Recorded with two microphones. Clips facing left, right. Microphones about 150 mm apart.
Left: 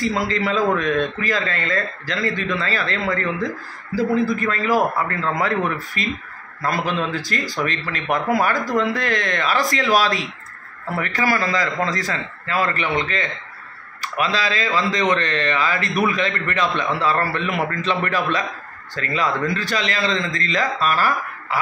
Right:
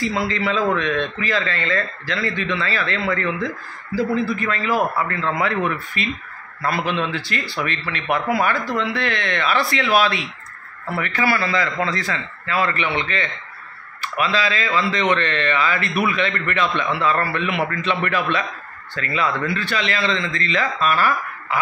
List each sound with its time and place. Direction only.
0.1 s a man's voice: 45° left (ahead or behind)